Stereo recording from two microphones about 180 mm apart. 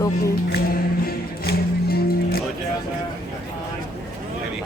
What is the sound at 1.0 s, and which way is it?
Music, 60° left (ahead or behind).